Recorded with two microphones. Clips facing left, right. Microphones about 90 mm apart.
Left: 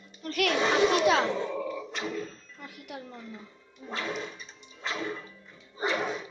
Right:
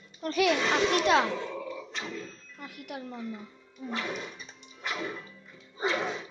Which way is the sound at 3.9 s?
15° right (ahead or behind).